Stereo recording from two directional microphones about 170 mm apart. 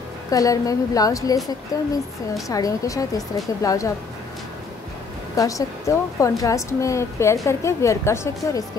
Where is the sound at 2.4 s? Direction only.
20° left (ahead or behind).